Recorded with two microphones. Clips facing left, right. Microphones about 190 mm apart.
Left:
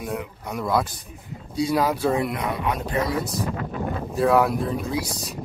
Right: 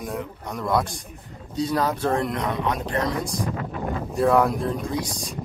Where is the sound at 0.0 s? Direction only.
5° left (ahead or behind).